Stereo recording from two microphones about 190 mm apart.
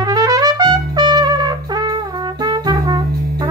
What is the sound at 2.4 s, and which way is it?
Brass instrument, 20° right (ahead or behind).